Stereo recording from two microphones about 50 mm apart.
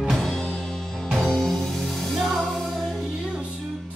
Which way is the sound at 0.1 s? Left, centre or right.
Centre.